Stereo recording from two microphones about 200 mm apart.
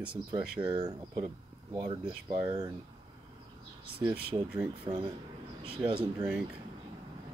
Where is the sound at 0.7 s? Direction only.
25° right (ahead or behind).